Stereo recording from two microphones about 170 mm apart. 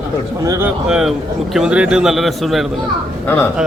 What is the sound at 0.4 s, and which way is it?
Speech, 20° right (ahead or behind).